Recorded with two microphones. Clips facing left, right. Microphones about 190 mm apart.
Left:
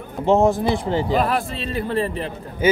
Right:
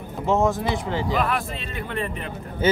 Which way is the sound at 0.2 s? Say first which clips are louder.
Left 5 dB; 30° left (ahead or behind).